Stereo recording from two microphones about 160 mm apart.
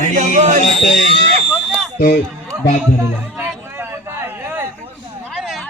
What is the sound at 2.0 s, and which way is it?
Speech, 60° left (ahead or behind).